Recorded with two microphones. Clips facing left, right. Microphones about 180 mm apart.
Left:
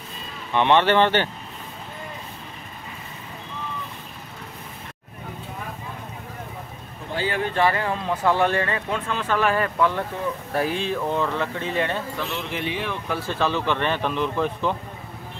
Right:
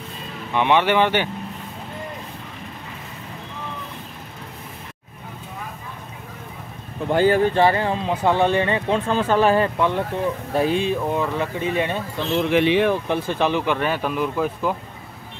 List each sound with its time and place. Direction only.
0.5 s speech: 10° right (ahead or behind)
7.1 s speech: 50° right (ahead or behind)
7.5 s speech: 30° right (ahead or behind)
12.4 s speech: 75° right (ahead or behind)
13.1 s speech: 15° right (ahead or behind)